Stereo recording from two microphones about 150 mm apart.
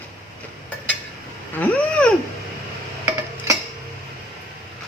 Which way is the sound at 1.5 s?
10° left (ahead or behind).